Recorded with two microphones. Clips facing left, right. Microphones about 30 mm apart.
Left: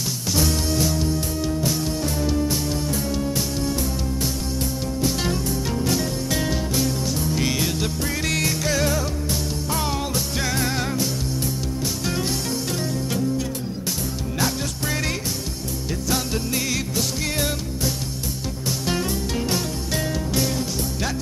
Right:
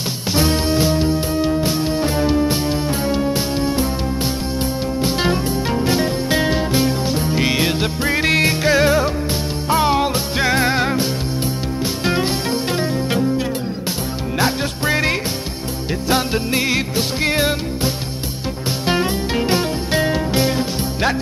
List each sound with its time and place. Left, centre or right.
0.3 s music: right
5.0 s music: right
14.4 s music: right